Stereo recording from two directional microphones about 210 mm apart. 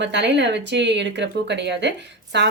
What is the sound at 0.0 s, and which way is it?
Speech, 55° right (ahead or behind).